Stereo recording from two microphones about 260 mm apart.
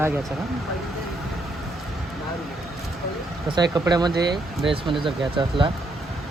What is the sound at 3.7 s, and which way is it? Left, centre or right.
Speech, centre.